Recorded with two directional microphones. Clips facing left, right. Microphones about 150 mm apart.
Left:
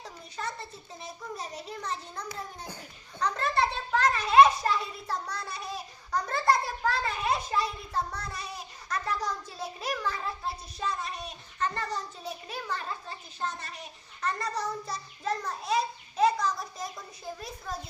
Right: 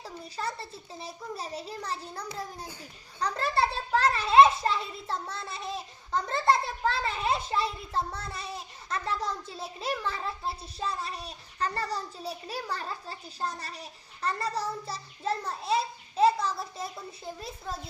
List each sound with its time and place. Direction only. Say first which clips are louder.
0.0 s a child's voice: right 2 dB; 30° right (ahead or behind)